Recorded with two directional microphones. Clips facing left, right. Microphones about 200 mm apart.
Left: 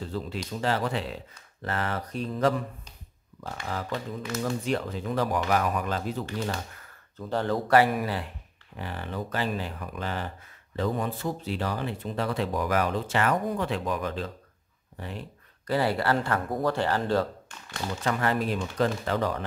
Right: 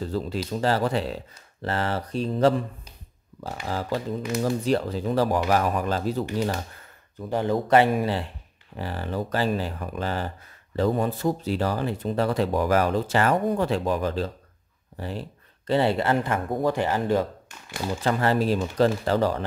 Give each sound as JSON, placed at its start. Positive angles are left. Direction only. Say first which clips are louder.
{"t": 0.0, "sound": "speech", "louder": "right 5 dB", "side_deg": -40}
{"t": 3.6, "sound": "speech", "louder": "right 5 dB", "side_deg": -35}
{"t": 7.2, "sound": "speech", "louder": "right 3 dB", "side_deg": -15}
{"t": 18.0, "sound": "speech", "louder": "right 4 dB", "side_deg": -30}